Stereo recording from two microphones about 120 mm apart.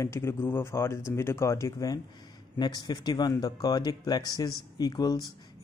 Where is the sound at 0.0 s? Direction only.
25° left (ahead or behind).